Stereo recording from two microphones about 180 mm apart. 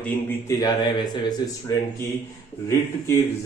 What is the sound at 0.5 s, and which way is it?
A man's voice, 25° left (ahead or behind).